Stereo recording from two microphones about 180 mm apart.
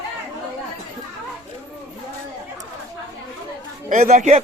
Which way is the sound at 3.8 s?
45° right (ahead or behind).